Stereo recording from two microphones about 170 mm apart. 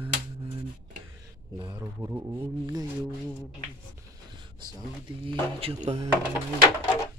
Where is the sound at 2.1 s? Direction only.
15° right (ahead or behind).